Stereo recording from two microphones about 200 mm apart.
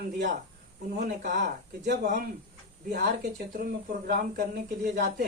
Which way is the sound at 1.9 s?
40° right (ahead or behind).